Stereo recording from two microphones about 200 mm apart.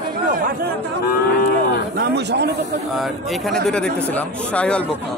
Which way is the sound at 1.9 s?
60° right (ahead or behind).